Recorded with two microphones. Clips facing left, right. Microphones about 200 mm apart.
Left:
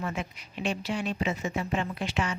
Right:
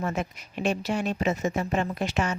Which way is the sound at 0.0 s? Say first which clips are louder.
Right 4 dB; 45° right (ahead or behind).